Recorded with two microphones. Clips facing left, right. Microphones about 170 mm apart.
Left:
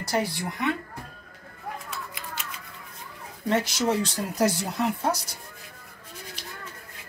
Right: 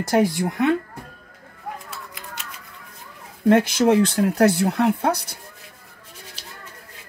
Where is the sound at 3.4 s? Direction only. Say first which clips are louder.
Right 9 dB; 55° right (ahead or behind).